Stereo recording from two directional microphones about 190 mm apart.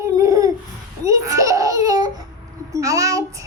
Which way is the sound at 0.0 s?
15° right (ahead or behind).